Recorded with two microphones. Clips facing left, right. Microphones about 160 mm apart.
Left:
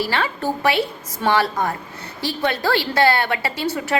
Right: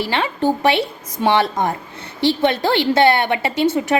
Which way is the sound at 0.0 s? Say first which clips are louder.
Right 3 dB; 20° right (ahead or behind).